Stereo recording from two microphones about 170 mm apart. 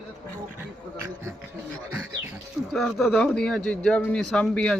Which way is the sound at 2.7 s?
Centre (ahead or behind).